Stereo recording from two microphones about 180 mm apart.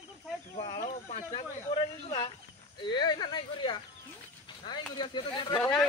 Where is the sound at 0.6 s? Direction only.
30° left (ahead or behind).